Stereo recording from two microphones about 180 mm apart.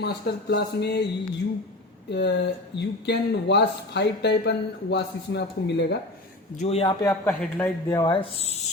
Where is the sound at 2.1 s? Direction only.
70° left (ahead or behind).